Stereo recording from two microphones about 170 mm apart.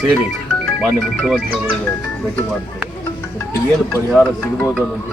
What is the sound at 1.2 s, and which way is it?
Speech, 5° left (ahead or behind).